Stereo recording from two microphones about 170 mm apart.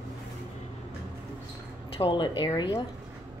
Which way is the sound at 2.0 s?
25° left (ahead or behind).